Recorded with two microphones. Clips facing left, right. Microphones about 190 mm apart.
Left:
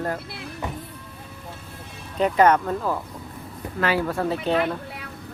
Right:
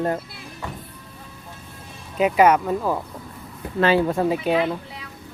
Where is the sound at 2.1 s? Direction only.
10° right (ahead or behind).